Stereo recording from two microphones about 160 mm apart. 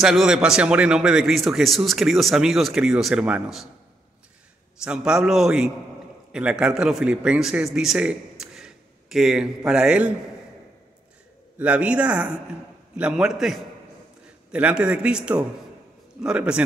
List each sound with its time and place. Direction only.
0.0 s a man's voice: centre (ahead or behind)
4.8 s a man's voice: 5° right (ahead or behind)
11.5 s a man's voice: 10° right (ahead or behind)